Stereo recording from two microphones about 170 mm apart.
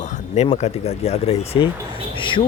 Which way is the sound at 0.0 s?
45° left (ahead or behind).